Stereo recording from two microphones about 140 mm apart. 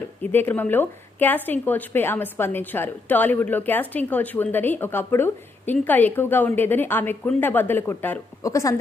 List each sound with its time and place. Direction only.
0.2 s a woman's voice: 15° left (ahead or behind)
8.4 s speech: 25° left (ahead or behind)